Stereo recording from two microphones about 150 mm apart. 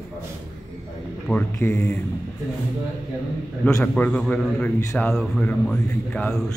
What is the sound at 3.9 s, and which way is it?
A man's voice, 10° left (ahead or behind).